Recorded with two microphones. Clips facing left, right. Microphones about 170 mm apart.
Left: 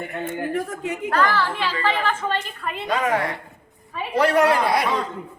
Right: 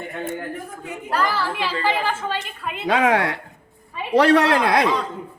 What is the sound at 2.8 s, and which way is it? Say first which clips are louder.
Speech: right 4 dB; 90° right.